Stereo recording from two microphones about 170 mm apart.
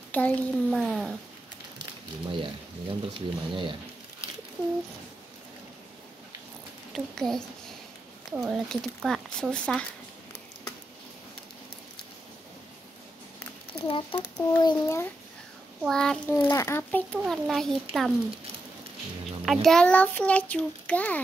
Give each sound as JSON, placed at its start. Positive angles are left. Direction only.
{"t": 0.1, "sound": "speech", "side_deg": 5}
{"t": 2.2, "sound": "speech", "side_deg": -30}
{"t": 6.9, "sound": "a woman's voice", "side_deg": 0}
{"t": 13.8, "sound": "a child's voice", "side_deg": 30}
{"t": 15.8, "sound": "speech", "side_deg": 5}
{"t": 16.4, "sound": "a child's voice", "side_deg": 15}
{"t": 17.2, "sound": "speech", "side_deg": 0}
{"t": 19.2, "sound": "a child's voice", "side_deg": 0}